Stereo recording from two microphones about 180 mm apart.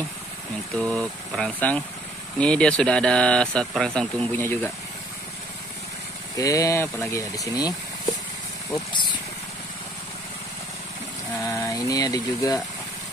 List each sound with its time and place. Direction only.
0.7 s speech: 5° left (ahead or behind)
6.3 s speech: 20° left (ahead or behind)
11.4 s speech: 20° left (ahead or behind)